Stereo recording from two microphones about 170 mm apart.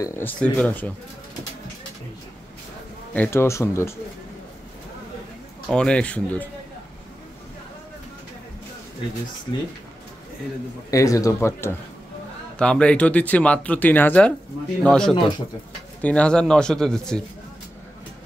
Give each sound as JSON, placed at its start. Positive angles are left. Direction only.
{"t": 0.0, "sound": "speech", "side_deg": 15}
{"t": 3.2, "sound": "speech", "side_deg": 15}
{"t": 5.7, "sound": "speech", "side_deg": 5}
{"t": 10.9, "sound": "speech", "side_deg": 20}